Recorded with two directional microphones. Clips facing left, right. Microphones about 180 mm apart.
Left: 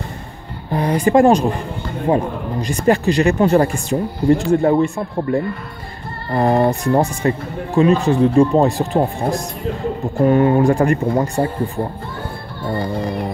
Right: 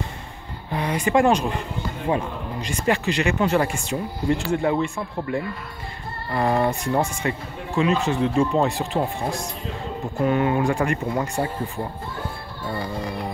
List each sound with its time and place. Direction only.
0.7 s speech: 40° left (ahead or behind)
8.9 s speech: 50° left (ahead or behind)
10.2 s speech: 40° left (ahead or behind)
12.7 s speech: 40° left (ahead or behind)